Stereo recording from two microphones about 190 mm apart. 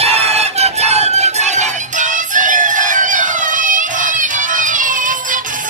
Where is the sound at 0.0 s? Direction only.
30° right (ahead or behind).